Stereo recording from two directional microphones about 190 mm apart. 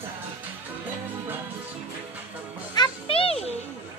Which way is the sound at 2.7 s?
25° left (ahead or behind).